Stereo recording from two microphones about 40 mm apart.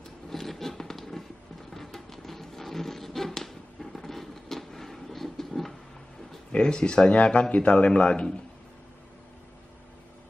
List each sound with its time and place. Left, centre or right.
0.3 s a sound: centre
1.7 s music: centre
6.5 s speech: left